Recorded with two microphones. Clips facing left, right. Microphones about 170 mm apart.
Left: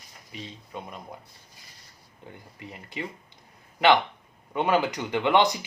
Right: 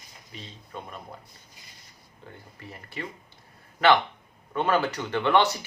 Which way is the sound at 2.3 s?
15° left (ahead or behind).